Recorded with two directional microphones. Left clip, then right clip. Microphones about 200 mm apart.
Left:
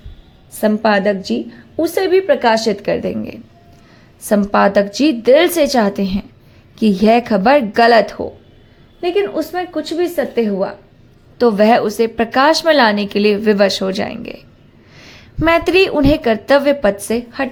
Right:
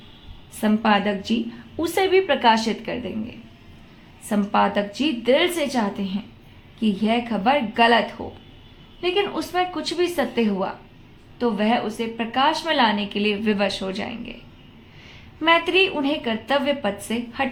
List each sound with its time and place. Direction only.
0.5 s a woman's voice: 25° left (ahead or behind)
9.1 s a woman's voice: 15° left (ahead or behind)
11.3 s a woman's voice: 45° left (ahead or behind)